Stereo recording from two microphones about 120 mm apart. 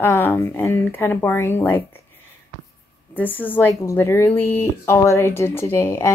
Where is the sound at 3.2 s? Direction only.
15° left (ahead or behind).